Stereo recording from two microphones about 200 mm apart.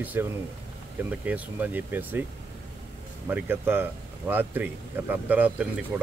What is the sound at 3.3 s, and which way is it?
Speech, 10° right (ahead or behind).